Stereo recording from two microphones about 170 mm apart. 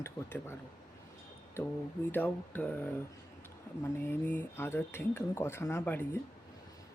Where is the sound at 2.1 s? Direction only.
10° left (ahead or behind).